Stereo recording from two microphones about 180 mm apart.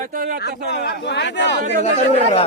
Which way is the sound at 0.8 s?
70° left (ahead or behind).